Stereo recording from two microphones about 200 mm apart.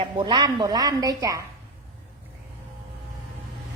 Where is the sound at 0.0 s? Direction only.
25° right (ahead or behind).